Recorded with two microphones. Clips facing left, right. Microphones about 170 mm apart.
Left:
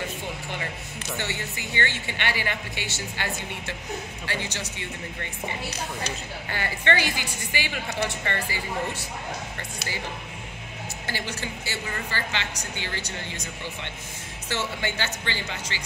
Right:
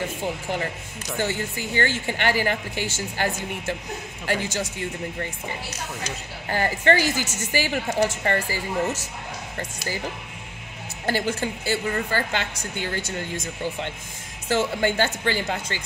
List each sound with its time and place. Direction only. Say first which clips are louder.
1.1 s a woman's voice: right 7 dB; 40° right (ahead or behind)
11.1 s a woman's voice: right 9 dB; 50° right (ahead or behind)
14.5 s a woman's voice: right 8 dB; 45° right (ahead or behind)